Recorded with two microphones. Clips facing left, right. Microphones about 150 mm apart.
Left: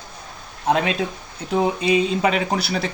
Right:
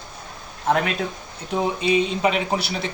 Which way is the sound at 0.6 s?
20° left (ahead or behind).